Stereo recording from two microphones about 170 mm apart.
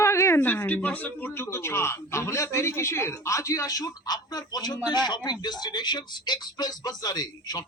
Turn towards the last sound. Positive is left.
turn(degrees=25)  # may be behind; listen again after turning